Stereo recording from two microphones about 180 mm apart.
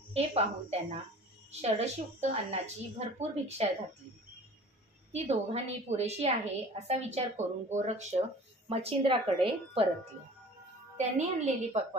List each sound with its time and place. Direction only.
0.1 s a woman's voice: 35° right (ahead or behind)
5.1 s a woman's voice: 35° right (ahead or behind)
11.0 s a woman's voice: 40° right (ahead or behind)